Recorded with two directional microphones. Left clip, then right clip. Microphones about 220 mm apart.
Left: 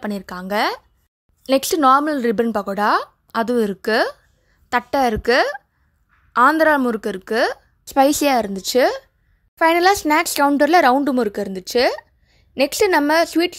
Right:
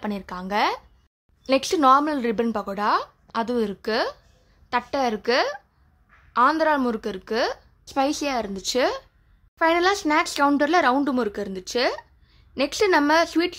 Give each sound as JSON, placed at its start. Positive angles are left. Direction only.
{"t": 0.0, "sound": "speech", "side_deg": 25}
{"t": 6.6, "sound": "speech", "side_deg": 30}